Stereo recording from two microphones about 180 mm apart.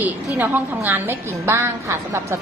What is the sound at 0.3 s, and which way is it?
A woman's voice, 10° right (ahead or behind).